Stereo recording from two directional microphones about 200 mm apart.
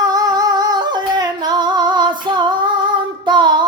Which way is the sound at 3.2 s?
20° right (ahead or behind).